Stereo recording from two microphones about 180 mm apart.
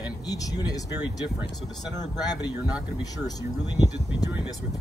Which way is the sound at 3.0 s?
20° left (ahead or behind).